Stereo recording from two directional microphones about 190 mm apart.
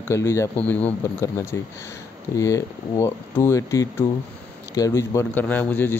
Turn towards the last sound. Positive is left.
turn(degrees=10)  # may be behind; listen again after turning